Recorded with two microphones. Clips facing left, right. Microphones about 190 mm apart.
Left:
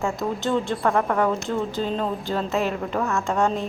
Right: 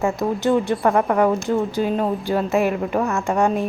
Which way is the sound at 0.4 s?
15° right (ahead or behind).